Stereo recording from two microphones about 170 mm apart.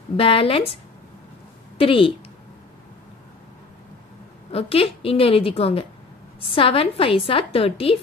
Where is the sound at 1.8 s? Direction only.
30° left (ahead or behind).